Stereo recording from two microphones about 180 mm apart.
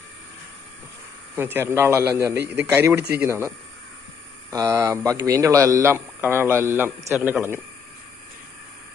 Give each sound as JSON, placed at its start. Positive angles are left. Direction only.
{"t": 1.4, "sound": "speech", "side_deg": -10}
{"t": 4.5, "sound": "speech", "side_deg": -15}